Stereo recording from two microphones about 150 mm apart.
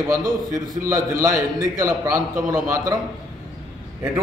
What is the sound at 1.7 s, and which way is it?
A man's voice, 20° right (ahead or behind).